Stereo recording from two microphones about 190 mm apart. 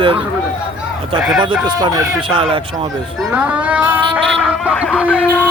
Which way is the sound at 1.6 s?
20° right (ahead or behind).